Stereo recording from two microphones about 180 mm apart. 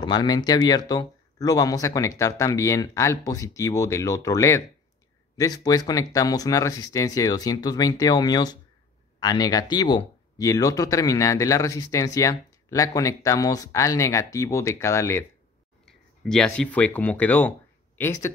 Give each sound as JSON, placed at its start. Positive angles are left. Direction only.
{"t": 0.0, "sound": "speech", "side_deg": 25}
{"t": 15.8, "sound": "speech", "side_deg": 5}